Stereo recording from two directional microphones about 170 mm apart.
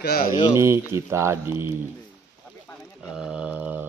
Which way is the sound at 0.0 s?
65° left (ahead or behind).